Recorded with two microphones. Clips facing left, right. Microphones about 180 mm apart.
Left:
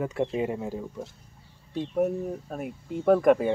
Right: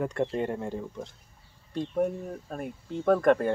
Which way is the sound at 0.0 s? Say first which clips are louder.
Left 1 dB; 5° left (ahead or behind).